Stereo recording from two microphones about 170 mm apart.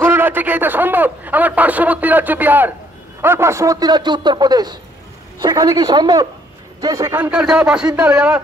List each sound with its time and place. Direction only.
0.0 s a man's voice: 10° right (ahead or behind)